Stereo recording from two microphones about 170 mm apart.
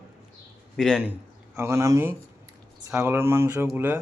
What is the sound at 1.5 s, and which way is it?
Speech, 15° right (ahead or behind).